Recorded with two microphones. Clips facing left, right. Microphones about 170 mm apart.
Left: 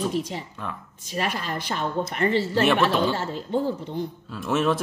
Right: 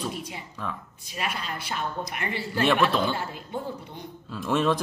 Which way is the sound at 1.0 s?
40° left (ahead or behind).